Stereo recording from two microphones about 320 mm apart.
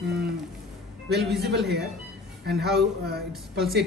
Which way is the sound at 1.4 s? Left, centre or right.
Right.